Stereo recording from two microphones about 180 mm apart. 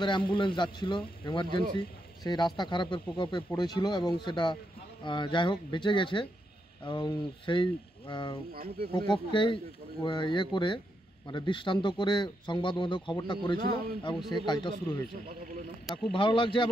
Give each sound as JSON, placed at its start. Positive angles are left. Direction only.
{"t": 0.0, "sound": "speech", "side_deg": 25}
{"t": 8.5, "sound": "speech", "side_deg": -60}
{"t": 8.9, "sound": "speech", "side_deg": 25}
{"t": 16.1, "sound": "speech", "side_deg": 30}